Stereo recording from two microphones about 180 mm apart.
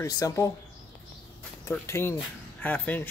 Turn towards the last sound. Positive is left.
turn(degrees=10)  # may be behind; listen again after turning